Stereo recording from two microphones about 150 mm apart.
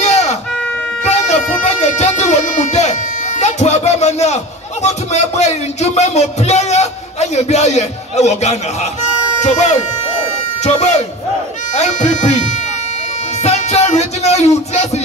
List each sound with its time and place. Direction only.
0.0 s a sound: 50° left (ahead or behind)
1.0 s music: 50° left (ahead or behind)
4.8 s speech: 50° left (ahead or behind)